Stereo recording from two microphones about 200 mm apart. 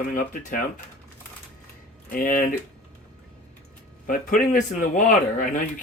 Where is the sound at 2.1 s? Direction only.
45° left (ahead or behind).